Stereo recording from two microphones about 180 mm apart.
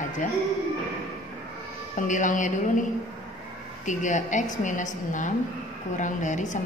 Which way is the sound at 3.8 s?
45° left (ahead or behind).